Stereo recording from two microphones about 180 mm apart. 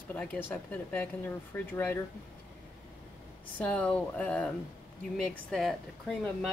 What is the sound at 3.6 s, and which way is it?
Speech, 5° left (ahead or behind).